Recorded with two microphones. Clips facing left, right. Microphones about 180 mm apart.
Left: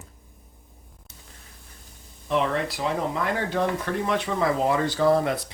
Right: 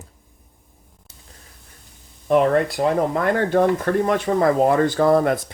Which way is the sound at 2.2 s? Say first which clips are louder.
Right 8 dB; 50° right (ahead or behind).